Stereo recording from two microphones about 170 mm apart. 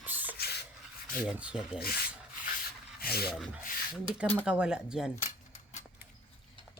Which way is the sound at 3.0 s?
65° left (ahead or behind).